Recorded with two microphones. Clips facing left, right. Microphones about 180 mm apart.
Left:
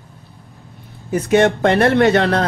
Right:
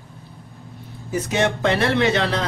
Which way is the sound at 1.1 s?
55° left (ahead or behind).